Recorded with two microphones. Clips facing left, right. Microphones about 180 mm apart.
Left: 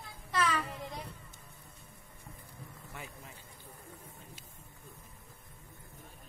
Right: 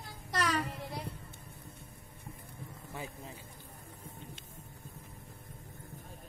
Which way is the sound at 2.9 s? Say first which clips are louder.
Right 6 dB; 30° right (ahead or behind).